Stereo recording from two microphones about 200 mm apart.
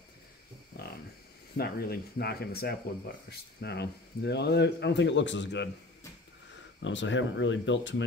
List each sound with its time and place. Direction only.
1.6 s speech: 50° left (ahead or behind)
6.8 s speech: 65° left (ahead or behind)